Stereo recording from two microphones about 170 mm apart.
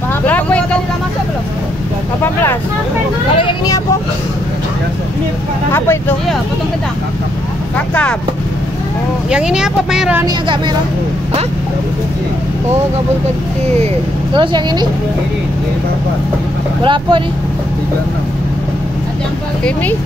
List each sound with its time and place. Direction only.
0.2 s vehicle: 10° left (ahead or behind)
3.3 s vehicle: 25° left (ahead or behind)
5.7 s speech: 15° left (ahead or behind)
7.7 s speech: 5° left (ahead or behind)
9.3 s a woman's voice: 5° right (ahead or behind)
10.2 s speech: 25° right (ahead or behind)
14.3 s speech: 30° right (ahead or behind)
16.8 s speech: 30° right (ahead or behind)